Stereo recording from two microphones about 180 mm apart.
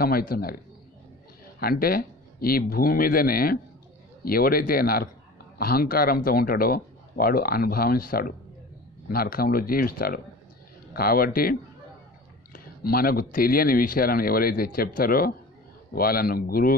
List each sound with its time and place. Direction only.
0.0 s speech: 55° left (ahead or behind)
1.6 s speech: 55° left (ahead or behind)
12.5 s speech: 55° left (ahead or behind)